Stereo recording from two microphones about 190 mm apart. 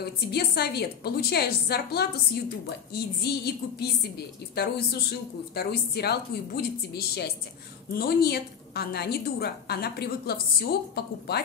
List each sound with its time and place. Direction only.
0.0 s a woman's voice: 55° left (ahead or behind)